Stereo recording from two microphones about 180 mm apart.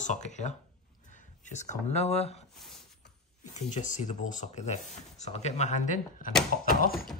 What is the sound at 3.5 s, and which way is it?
Speech, 40° left (ahead or behind).